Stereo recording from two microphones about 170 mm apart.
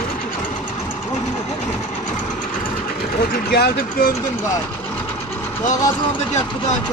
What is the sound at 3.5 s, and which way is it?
Speech, 60° left (ahead or behind).